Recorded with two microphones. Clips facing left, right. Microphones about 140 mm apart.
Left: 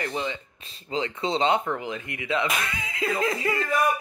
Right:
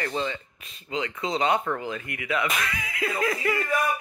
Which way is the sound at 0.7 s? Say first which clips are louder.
Left 2 dB; 30° left (ahead or behind).